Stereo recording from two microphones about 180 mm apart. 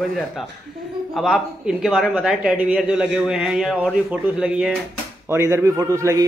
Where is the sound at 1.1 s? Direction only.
Centre (ahead or behind).